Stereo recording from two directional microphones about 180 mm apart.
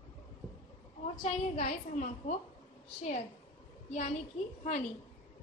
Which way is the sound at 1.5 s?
40° left (ahead or behind).